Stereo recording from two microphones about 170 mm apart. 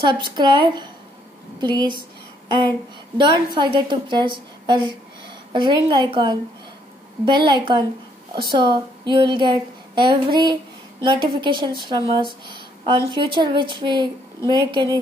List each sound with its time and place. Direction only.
0.0 s speech: 30° right (ahead or behind)
2.4 s a sound: 25° right (ahead or behind)
3.2 s speech: 30° right (ahead or behind)
5.5 s speech: 30° right (ahead or behind)